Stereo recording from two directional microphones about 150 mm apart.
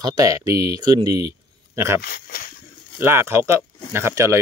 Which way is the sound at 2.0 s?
80° left.